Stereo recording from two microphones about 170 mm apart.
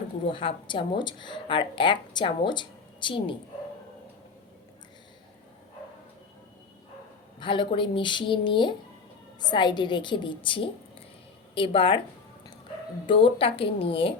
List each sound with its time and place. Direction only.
0.3 s speech: 30° left (ahead or behind)
7.3 s speech: 30° left (ahead or behind)
13.1 s speech: 30° left (ahead or behind)